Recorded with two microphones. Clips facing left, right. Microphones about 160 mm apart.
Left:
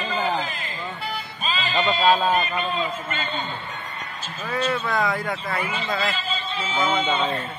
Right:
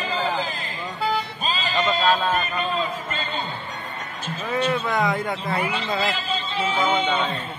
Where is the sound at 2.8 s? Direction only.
35° right (ahead or behind).